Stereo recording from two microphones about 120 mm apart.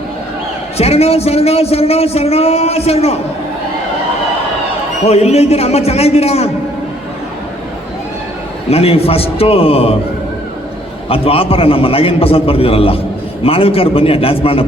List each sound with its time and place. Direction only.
0.8 s a man's voice: 60° left (ahead or behind)
5.0 s a man's voice: 60° left (ahead or behind)
8.7 s a man's voice: 55° left (ahead or behind)
11.1 s a man's voice: 50° left (ahead or behind)